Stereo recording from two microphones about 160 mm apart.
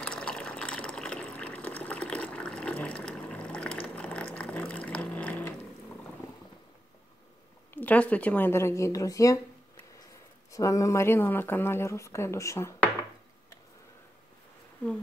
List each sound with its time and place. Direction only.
0.0 s fill: 5° left (ahead or behind)
7.7 s speech: 10° left (ahead or behind)
10.5 s speech: 20° left (ahead or behind)